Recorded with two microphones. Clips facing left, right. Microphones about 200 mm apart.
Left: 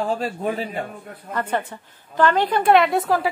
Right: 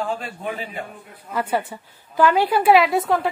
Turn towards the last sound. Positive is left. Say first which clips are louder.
# even
turn(degrees=0)  # may be behind; listen again after turning